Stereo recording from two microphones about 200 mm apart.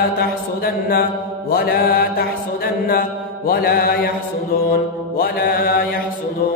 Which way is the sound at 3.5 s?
50° left (ahead or behind).